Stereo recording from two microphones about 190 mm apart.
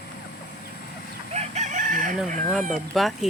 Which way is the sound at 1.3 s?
35° right (ahead or behind).